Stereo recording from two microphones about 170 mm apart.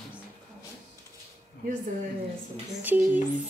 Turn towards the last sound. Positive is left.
turn(degrees=-10)  # may be behind; listen again after turning